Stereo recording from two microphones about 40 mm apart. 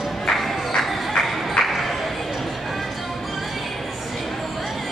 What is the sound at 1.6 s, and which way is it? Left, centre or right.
Music, centre.